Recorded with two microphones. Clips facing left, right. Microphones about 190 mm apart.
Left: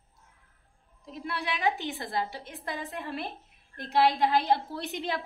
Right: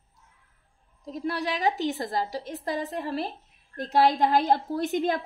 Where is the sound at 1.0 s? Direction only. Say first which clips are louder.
Right 6 dB; 40° right (ahead or behind).